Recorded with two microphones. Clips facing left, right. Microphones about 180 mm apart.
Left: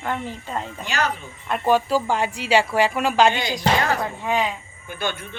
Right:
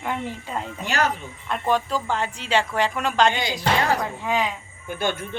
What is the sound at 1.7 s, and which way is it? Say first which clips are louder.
Speech: left 4 dB; 5° left (ahead or behind).